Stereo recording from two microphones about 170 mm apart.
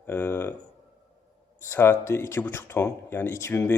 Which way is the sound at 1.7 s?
15° left (ahead or behind).